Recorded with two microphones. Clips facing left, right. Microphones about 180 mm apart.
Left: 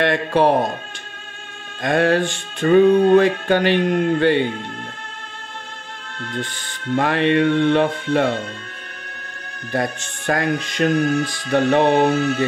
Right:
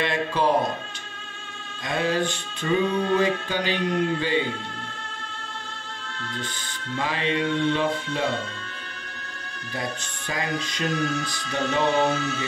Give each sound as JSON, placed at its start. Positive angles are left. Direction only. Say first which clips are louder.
{"t": 0.0, "sound": "speech", "louder": "left 7 dB", "side_deg": 65}
{"t": 1.8, "sound": "speech", "louder": "left 8 dB", "side_deg": 55}
{"t": 6.1, "sound": "speech", "louder": "left 7 dB", "side_deg": 55}
{"t": 9.7, "sound": "speech", "louder": "left 9 dB", "side_deg": 55}